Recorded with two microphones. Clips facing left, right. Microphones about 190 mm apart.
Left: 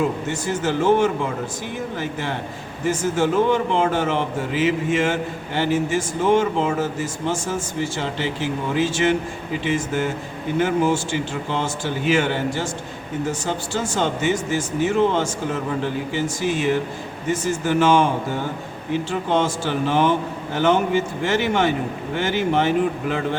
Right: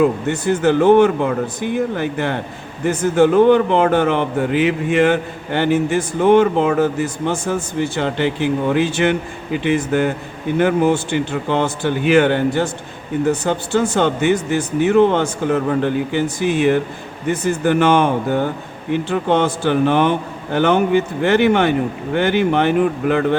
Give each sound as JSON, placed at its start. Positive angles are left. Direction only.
{"t": 0.0, "sound": "speech", "side_deg": -60}